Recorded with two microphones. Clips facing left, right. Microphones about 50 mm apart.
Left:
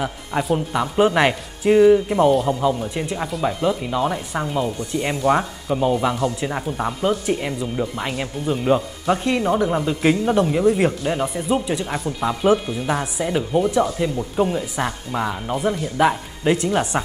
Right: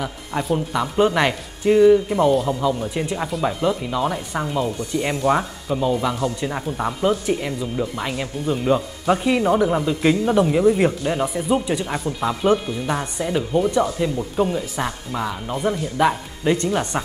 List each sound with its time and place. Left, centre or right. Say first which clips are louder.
0.4 s speech: left 1 dB; centre
5.8 s speech: left 2 dB; centre
6.1 s speech: left 1 dB; centre
9.0 s speech: right 1 dB; centre
15.6 s speech: even; centre